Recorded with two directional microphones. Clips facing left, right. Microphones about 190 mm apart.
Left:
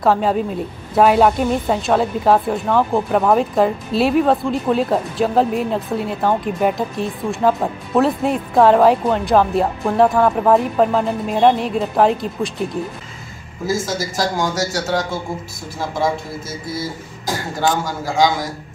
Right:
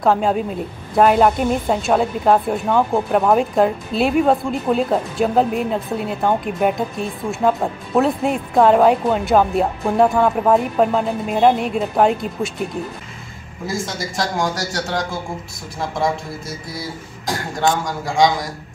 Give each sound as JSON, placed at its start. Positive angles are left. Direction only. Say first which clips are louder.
{"t": 0.0, "sound": "a woman's voice", "louder": "left 1 dB", "side_deg": 0}
{"t": 13.7, "sound": "a woman's voice", "louder": "left 4 dB", "side_deg": 0}